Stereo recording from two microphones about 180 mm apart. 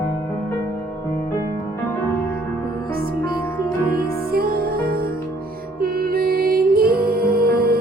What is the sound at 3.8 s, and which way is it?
Music, 55° right (ahead or behind).